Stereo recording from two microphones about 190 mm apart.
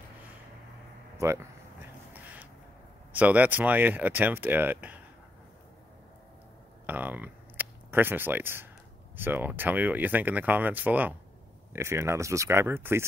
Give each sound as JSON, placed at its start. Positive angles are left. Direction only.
{"t": 1.1, "sound": "a sound", "side_deg": -15}
{"t": 3.1, "sound": "speech", "side_deg": -10}
{"t": 6.9, "sound": "speech", "side_deg": -10}